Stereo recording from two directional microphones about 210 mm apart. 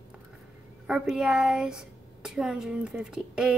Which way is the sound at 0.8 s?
Centre (ahead or behind).